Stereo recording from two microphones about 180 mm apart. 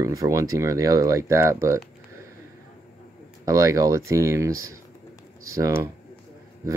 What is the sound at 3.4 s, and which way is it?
Speech, 20° right (ahead or behind).